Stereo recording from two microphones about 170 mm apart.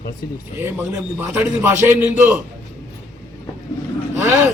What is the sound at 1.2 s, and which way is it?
A man's voice, 15° right (ahead or behind).